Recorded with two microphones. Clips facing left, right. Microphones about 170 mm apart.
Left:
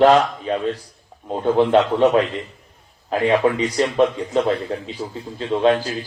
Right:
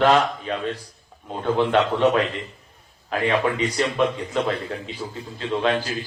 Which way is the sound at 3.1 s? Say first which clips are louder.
Left 5 dB; 35° left (ahead or behind).